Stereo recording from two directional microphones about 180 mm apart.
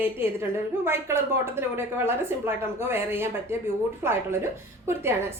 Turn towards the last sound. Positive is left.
turn(degrees=-15)  # may be behind; listen again after turning